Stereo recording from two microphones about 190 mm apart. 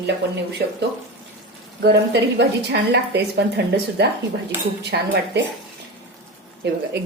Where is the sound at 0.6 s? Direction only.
60° right (ahead or behind).